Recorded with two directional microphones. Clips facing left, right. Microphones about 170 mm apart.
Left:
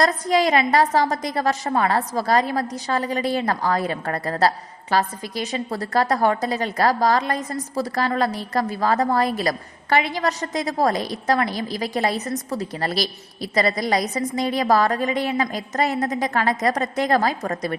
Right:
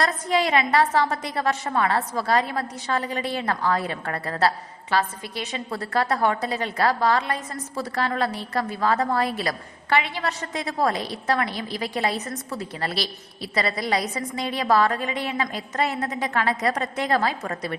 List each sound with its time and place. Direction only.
0.0 s a woman's voice: 40° left (ahead or behind)